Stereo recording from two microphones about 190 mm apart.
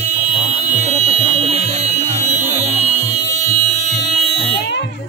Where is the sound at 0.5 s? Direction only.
35° right (ahead or behind).